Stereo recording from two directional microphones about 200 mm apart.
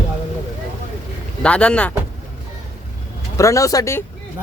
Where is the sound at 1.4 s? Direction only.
5° left (ahead or behind).